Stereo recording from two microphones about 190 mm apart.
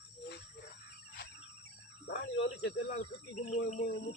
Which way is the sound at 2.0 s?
70° left (ahead or behind).